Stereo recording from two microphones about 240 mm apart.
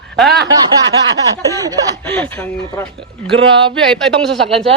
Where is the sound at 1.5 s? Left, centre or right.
Centre.